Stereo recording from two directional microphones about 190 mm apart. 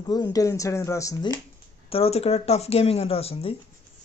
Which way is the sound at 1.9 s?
30° left (ahead or behind).